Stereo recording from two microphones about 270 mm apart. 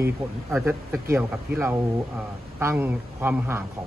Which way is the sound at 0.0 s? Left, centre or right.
Centre.